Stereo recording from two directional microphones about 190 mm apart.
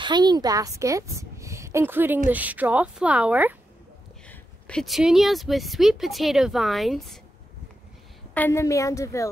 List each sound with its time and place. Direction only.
0.0 s a woman's voice: 25° right (ahead or behind); by 3.5 s 10° right (ahead or behind)
4.3 s speech: 5° left (ahead or behind)
8.4 s a woman's voice: 15° left (ahead or behind)